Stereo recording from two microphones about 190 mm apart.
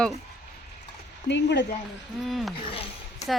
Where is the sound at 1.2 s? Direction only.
65° left (ahead or behind).